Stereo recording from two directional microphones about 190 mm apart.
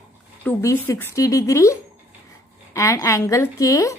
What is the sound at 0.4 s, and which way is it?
A woman's voice, 15° left (ahead or behind).